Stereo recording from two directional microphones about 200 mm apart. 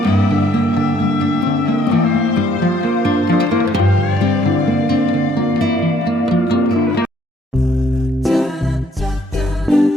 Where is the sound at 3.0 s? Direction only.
50° left (ahead or behind).